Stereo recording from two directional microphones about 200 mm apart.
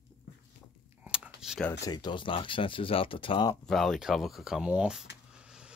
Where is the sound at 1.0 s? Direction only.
5° right (ahead or behind).